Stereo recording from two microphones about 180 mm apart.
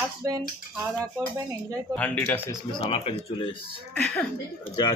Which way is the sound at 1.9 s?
10° left (ahead or behind).